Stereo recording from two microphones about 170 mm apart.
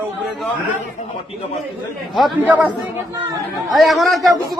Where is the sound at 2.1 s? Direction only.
5° right (ahead or behind).